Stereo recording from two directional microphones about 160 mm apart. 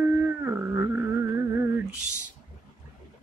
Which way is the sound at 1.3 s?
15° right (ahead or behind).